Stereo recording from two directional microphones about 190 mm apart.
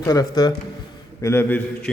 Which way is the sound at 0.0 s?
20° left (ahead or behind).